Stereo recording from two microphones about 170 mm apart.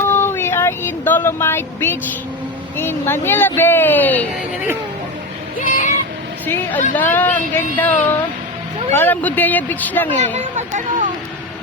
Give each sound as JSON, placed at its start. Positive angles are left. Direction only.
{"t": 0.1, "sound": "a sound", "side_deg": 15}
{"t": 2.7, "sound": "speech", "side_deg": 15}
{"t": 5.5, "sound": "speech", "side_deg": 50}
{"t": 6.4, "sound": "a woman's voice", "side_deg": 10}
{"t": 10.3, "sound": "speech", "side_deg": -50}